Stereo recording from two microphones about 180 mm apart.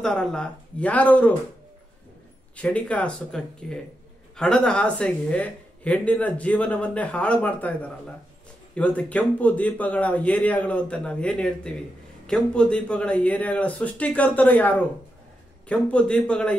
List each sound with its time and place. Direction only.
0.0 s speech: 5° left (ahead or behind)
2.5 s speech: 5° left (ahead or behind)